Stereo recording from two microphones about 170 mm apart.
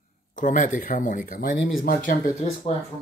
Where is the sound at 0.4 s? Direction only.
50° left (ahead or behind).